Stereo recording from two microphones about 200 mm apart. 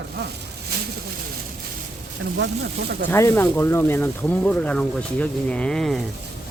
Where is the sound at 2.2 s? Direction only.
65° right (ahead or behind).